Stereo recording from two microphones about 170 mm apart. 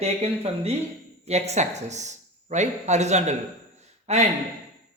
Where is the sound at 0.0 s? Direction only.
40° right (ahead or behind).